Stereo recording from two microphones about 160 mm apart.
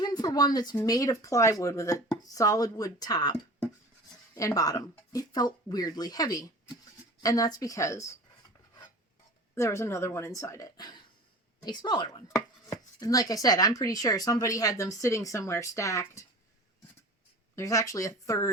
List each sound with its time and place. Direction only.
0.0 s speech: 25° left (ahead or behind)
4.4 s speech: 20° left (ahead or behind)
9.6 s a woman's voice: 15° left (ahead or behind)
17.5 s speech: 20° left (ahead or behind)